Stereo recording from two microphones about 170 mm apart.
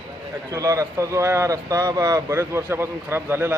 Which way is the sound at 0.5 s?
20° right (ahead or behind).